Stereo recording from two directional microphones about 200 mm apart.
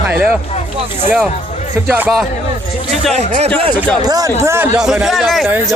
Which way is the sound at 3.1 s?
35° right (ahead or behind).